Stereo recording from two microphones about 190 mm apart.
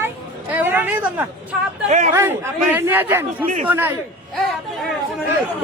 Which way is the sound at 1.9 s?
40° right (ahead or behind).